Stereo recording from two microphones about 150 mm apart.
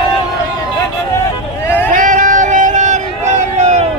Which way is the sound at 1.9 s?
55° right (ahead or behind).